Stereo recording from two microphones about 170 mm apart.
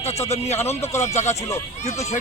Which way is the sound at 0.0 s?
40° left (ahead or behind).